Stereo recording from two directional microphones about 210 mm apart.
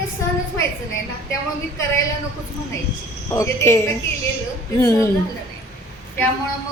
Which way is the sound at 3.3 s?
15° left (ahead or behind).